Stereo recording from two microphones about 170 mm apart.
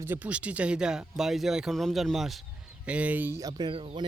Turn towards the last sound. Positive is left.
turn(degrees=-30)  # may be behind; listen again after turning